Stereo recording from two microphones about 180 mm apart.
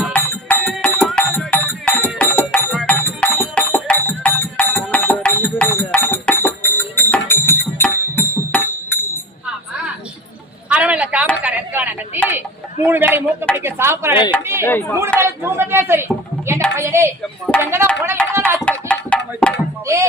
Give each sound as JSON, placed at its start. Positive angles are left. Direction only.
{"t": 0.0, "sound": "music", "side_deg": 10}
{"t": 0.7, "sound": "music", "side_deg": 0}
{"t": 10.7, "sound": "a sound", "side_deg": -10}
{"t": 12.8, "sound": "a man's voice", "side_deg": -10}
{"t": 14.6, "sound": "speech", "side_deg": 10}
{"t": 15.2, "sound": "a woman's voice", "side_deg": -15}
{"t": 18.3, "sound": "music", "side_deg": -15}
{"t": 18.6, "sound": "music", "side_deg": 5}
{"t": 19.9, "sound": "a woman's voice", "side_deg": -15}